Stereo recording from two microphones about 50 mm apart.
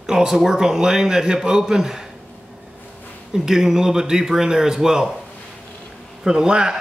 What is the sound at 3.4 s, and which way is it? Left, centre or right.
Speech, centre.